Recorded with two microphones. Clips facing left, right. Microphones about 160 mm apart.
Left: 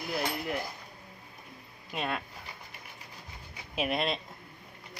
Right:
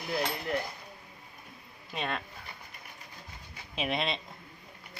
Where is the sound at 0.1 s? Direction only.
10° left (ahead or behind).